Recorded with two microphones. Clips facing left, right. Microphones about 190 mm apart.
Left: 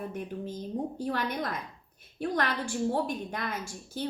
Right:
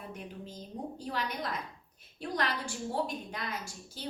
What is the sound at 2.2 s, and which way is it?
A woman's voice, 55° left (ahead or behind).